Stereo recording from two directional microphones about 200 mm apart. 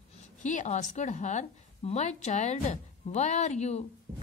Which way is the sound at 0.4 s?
35° left (ahead or behind).